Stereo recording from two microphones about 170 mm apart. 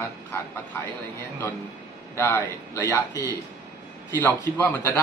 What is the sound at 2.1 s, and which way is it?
Speech, 15° left (ahead or behind).